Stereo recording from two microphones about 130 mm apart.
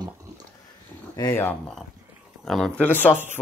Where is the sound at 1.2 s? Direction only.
20° left (ahead or behind).